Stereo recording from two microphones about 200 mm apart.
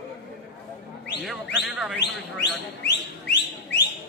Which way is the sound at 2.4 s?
60° left (ahead or behind).